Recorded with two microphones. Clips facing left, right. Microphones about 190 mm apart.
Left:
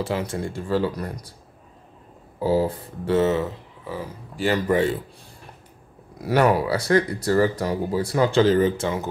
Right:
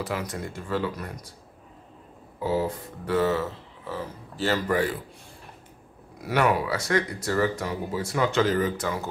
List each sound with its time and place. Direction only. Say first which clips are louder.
0.0 s speech: left 5 dB; 30° left (ahead or behind)
2.4 s speech: left 5 dB; 35° left (ahead or behind)
6.2 s speech: left 4 dB; 35° left (ahead or behind)